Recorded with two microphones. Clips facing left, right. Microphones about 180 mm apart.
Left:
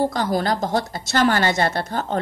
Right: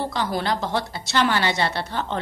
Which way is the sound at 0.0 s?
45° left (ahead or behind).